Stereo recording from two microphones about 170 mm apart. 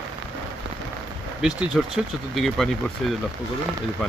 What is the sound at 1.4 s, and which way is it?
Speech, 5° right (ahead or behind).